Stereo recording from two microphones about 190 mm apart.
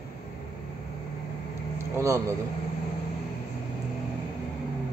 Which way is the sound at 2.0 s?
15° right (ahead or behind).